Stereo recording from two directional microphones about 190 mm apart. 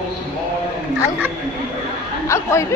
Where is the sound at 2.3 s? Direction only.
15° left (ahead or behind).